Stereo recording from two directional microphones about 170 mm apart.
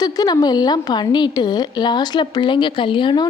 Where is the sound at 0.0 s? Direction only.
25° left (ahead or behind).